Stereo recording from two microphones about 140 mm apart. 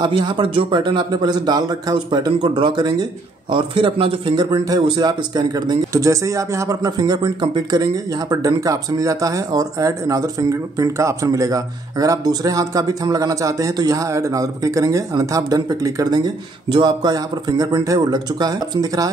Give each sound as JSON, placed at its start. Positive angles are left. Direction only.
{"t": 0.0, "sound": "a man's voice", "side_deg": -30}